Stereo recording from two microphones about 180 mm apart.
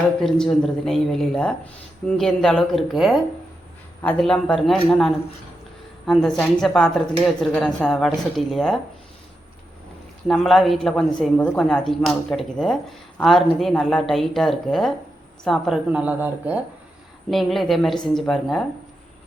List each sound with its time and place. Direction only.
0.2 s speech: 5° left (ahead or behind)
10.2 s speech: centre (ahead or behind)